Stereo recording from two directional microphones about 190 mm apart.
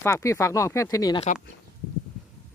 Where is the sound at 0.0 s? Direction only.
15° left (ahead or behind).